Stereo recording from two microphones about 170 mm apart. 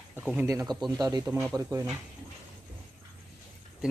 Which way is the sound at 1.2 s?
5° right (ahead or behind).